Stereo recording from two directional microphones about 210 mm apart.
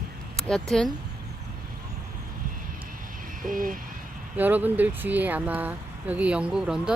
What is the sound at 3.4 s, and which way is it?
Vehicle, 40° right (ahead or behind).